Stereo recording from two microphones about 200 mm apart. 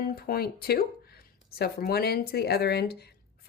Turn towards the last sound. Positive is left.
turn(degrees=55)  # may be behind; listen again after turning